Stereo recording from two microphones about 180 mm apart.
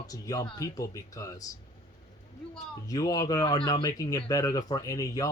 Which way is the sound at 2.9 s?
20° left (ahead or behind).